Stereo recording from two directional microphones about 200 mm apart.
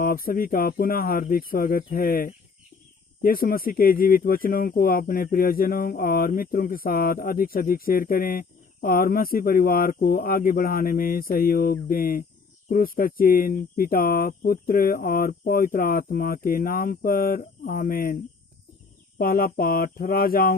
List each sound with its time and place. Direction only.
0.0 s speech: 45° left (ahead or behind)
19.2 s speech: 45° left (ahead or behind)